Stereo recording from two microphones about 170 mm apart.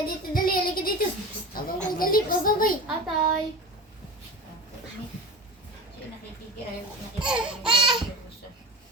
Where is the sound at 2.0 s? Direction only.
55° left (ahead or behind).